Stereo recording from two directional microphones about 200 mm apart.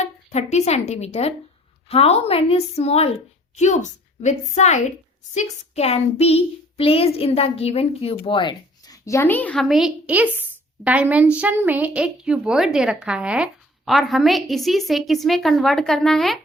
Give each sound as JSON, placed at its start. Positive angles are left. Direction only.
{"t": 0.0, "sound": "a woman's voice", "side_deg": 35}